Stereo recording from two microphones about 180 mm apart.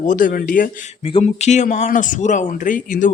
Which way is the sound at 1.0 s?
30° left (ahead or behind).